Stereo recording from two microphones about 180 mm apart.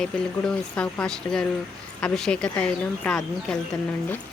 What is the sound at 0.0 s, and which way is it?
Speech, 5° left (ahead or behind).